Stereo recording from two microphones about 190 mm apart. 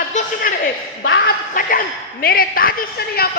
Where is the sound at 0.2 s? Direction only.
40° left (ahead or behind).